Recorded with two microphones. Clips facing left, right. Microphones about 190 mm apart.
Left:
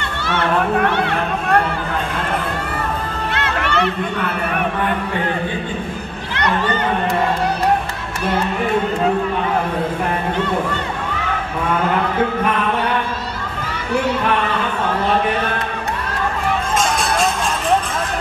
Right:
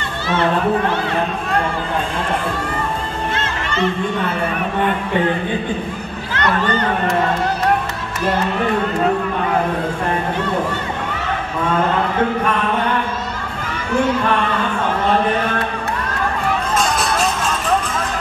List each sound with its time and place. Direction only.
0.9 s speech: 65° left (ahead or behind)
3.3 s music: 65° left (ahead or behind)